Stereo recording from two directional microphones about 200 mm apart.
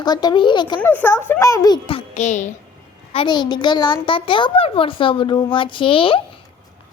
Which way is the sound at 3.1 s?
25° left (ahead or behind).